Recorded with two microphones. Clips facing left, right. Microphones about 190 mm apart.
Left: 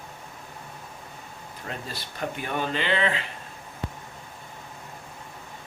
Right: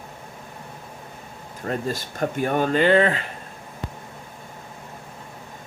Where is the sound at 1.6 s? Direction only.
45° right (ahead or behind).